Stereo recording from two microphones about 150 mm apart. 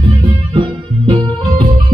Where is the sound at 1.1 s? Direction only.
35° right (ahead or behind).